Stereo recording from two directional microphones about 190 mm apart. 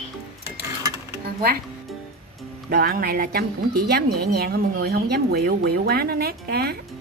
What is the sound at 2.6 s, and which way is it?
A woman's voice, 55° right (ahead or behind).